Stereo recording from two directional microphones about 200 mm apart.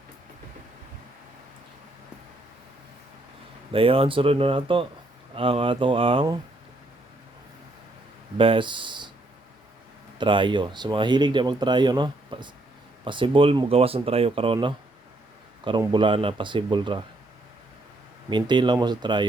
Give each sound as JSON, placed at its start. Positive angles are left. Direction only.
{"t": 3.7, "sound": "speech", "side_deg": -25}
{"t": 8.4, "sound": "speech", "side_deg": -25}
{"t": 10.2, "sound": "speech", "side_deg": -25}
{"t": 15.8, "sound": "speech", "side_deg": -25}
{"t": 18.3, "sound": "speech", "side_deg": -20}